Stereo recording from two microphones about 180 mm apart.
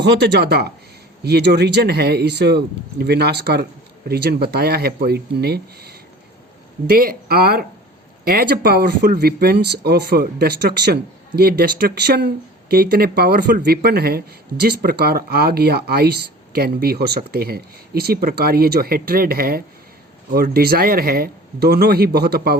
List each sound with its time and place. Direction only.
0.3 s speech: 70° right (ahead or behind)